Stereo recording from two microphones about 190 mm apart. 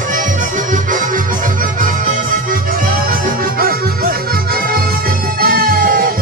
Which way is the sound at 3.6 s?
50° right (ahead or behind).